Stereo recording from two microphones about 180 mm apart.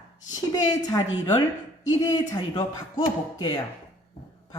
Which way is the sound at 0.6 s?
20° left (ahead or behind).